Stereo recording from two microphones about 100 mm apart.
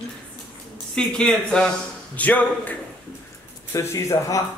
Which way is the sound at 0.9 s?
10° left (ahead or behind).